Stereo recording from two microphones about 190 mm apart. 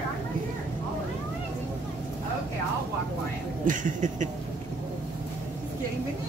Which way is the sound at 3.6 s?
45° right (ahead or behind).